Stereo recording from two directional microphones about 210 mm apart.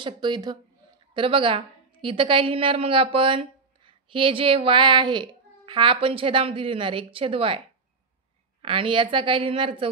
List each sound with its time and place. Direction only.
0.0 s a woman's voice: 20° right (ahead or behind)
8.6 s a woman's voice: 25° right (ahead or behind)